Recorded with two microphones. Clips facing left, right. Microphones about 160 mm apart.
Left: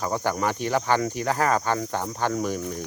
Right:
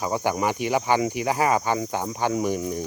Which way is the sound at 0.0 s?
15° right (ahead or behind).